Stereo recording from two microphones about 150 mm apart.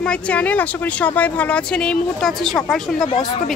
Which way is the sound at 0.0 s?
10° left (ahead or behind).